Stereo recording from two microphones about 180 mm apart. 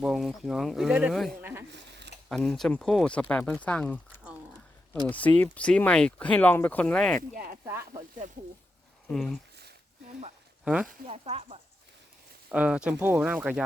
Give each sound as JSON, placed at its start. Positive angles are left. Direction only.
{"t": 0.0, "sound": "speech", "side_deg": -5}
{"t": 1.4, "sound": "speech", "side_deg": -10}
{"t": 1.7, "sound": "a sound", "side_deg": -70}
{"t": 2.3, "sound": "speech", "side_deg": 5}
{"t": 5.0, "sound": "speech", "side_deg": 10}
{"t": 7.2, "sound": "a sound", "side_deg": -50}
{"t": 7.6, "sound": "speech", "side_deg": -15}
{"t": 9.0, "sound": "speech", "side_deg": 0}
{"t": 10.8, "sound": "speech", "side_deg": -35}
{"t": 12.5, "sound": "speech", "side_deg": -5}